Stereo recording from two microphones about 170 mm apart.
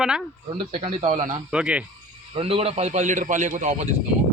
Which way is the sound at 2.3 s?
35° right (ahead or behind).